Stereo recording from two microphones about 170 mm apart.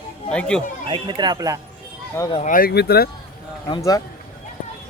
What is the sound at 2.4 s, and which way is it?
Speech, 55° left (ahead or behind).